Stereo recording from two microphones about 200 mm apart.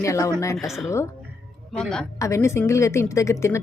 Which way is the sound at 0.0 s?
15° left (ahead or behind).